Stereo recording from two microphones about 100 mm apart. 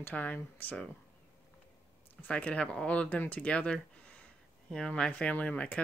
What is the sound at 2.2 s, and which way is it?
Speech, 10° left (ahead or behind).